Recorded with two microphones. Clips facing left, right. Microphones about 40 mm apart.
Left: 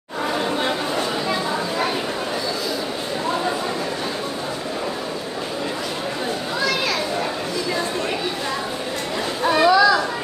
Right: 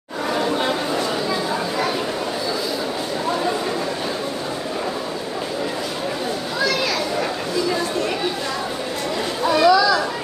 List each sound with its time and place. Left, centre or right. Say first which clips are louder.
9.4 s children playing: even; left